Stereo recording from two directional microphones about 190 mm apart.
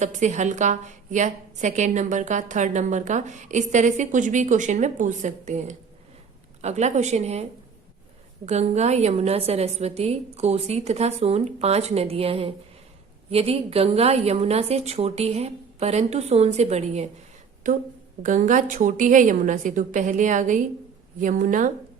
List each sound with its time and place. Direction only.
0.0 s a woman's voice: 40° right (ahead or behind)
8.4 s a woman's voice: 35° right (ahead or behind)
18.2 s a woman's voice: 45° right (ahead or behind)